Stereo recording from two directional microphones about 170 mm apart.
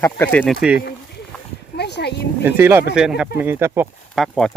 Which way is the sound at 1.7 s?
75° left (ahead or behind).